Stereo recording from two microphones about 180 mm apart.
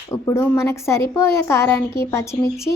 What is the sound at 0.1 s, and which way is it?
A woman's voice, 15° left (ahead or behind).